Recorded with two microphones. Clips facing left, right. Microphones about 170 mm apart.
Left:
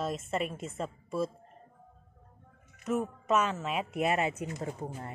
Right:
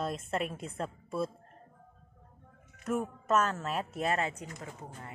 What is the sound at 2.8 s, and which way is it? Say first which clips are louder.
A woman's voice: left 1 dB; 5° left (ahead or behind).